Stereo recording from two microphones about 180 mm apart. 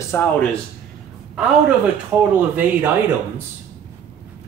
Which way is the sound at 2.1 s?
10° right (ahead or behind).